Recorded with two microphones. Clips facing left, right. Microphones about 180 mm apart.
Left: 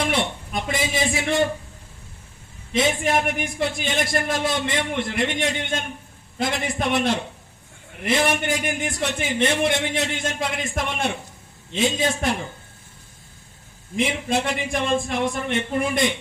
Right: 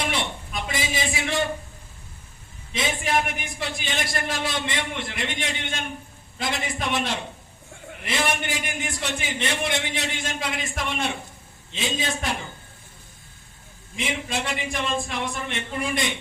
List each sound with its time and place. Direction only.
0.1 s a sound: 50° left (ahead or behind)
2.7 s a man's voice: 50° left (ahead or behind)
13.9 s a man's voice: 50° left (ahead or behind)